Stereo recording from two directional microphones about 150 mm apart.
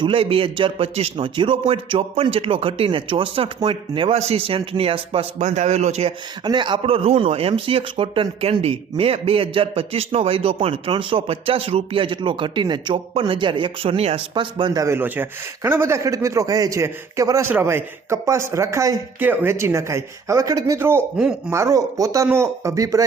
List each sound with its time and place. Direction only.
0.0 s speech: 35° right (ahead or behind)
6.4 s speech: 30° right (ahead or behind)
21.2 s speech: 5° right (ahead or behind)
21.5 s speech: 20° right (ahead or behind)